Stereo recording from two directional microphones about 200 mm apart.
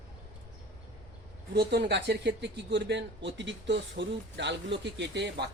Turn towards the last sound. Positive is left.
turn(degrees=-60)  # may be behind; listen again after turning